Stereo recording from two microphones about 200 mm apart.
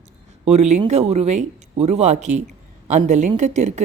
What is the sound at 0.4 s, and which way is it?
A woman's voice, 35° right (ahead or behind).